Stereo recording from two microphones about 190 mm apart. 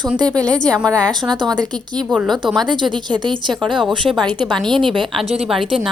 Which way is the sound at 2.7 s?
25° right (ahead or behind).